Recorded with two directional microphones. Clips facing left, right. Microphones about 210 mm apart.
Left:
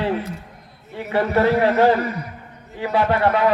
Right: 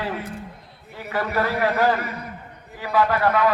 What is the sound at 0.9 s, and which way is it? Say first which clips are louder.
A man's voice: left 5 dB; 25° left (ahead or behind).